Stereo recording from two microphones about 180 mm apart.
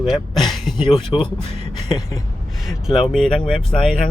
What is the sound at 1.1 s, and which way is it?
Speech, 25° left (ahead or behind).